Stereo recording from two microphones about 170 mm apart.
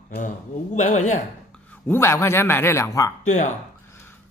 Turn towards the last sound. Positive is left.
turn(degrees=45)  # may be behind; listen again after turning